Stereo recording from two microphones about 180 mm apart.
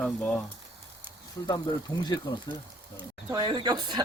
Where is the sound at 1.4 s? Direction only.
20° left (ahead or behind).